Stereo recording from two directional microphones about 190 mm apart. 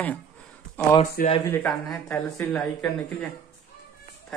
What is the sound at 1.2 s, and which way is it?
Speech, 50° left (ahead or behind).